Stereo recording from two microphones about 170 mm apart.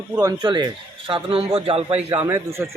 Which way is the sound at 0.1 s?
15° right (ahead or behind).